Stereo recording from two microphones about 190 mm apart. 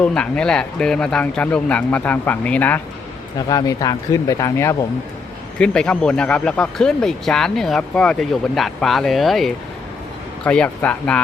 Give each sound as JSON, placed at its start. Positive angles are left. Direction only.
{"t": 0.0, "sound": "speech", "side_deg": 5}
{"t": 3.3, "sound": "speech", "side_deg": 20}
{"t": 5.5, "sound": "speech", "side_deg": 5}